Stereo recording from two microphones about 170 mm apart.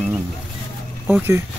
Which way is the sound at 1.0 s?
15° right (ahead or behind).